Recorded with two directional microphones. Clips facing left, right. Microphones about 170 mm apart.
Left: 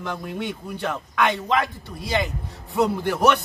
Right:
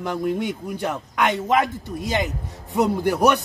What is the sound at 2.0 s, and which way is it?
Speech, 45° right (ahead or behind).